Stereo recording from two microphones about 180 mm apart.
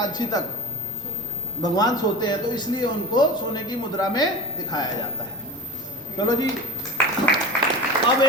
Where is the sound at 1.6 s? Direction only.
20° left (ahead or behind).